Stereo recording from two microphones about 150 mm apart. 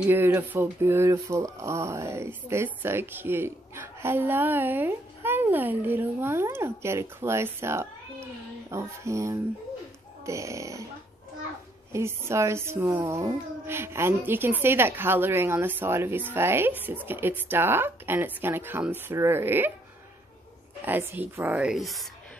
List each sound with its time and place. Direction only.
0.0 s speech: 15° right (ahead or behind)
11.9 s speech: 20° right (ahead or behind)
20.8 s speech: 15° right (ahead or behind)